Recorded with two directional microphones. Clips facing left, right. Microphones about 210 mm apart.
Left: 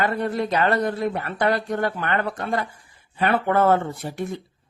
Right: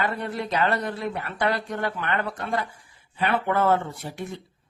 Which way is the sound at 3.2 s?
50° left (ahead or behind).